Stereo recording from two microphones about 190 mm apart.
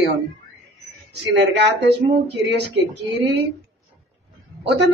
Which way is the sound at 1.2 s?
65° right (ahead or behind).